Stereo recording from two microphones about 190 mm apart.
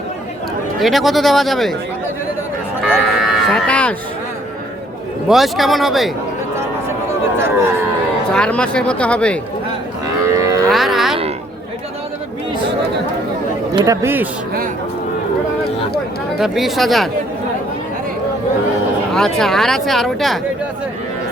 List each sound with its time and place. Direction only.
0.8 s speech: centre (ahead or behind)
2.8 s sheep: centre (ahead or behind)
5.3 s speech: centre (ahead or behind)
7.3 s speech: 15° right (ahead or behind)
8.3 s speech: 5° left (ahead or behind)
10.2 s livestock: 15° right (ahead or behind)
10.7 s music: centre (ahead or behind)
13.7 s speech: 20° right (ahead or behind)
16.4 s speech: centre (ahead or behind)
19.1 s speech: 5° left (ahead or behind)